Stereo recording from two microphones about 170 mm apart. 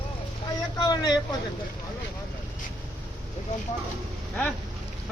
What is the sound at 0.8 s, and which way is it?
Speech, 25° left (ahead or behind).